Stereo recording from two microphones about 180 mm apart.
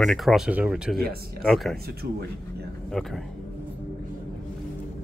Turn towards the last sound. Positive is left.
turn(degrees=0)  # may be behind; listen again after turning